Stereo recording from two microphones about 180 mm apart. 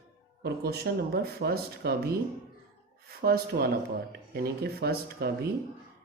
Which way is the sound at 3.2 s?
60° right (ahead or behind).